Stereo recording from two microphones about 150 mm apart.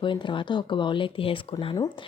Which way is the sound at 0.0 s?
35° left (ahead or behind).